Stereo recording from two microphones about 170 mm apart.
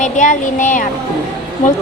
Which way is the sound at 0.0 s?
50° left (ahead or behind).